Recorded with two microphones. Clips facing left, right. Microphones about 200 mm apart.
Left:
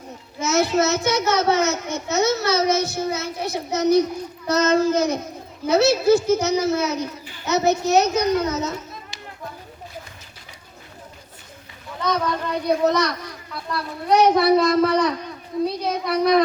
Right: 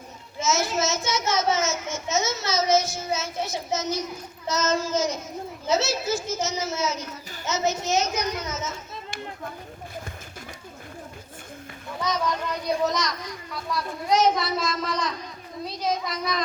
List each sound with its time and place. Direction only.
0.3 s a child's voice: 60° left (ahead or behind)
12.0 s a child's voice: 60° left (ahead or behind)